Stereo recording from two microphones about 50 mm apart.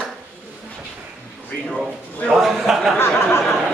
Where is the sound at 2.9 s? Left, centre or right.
Left.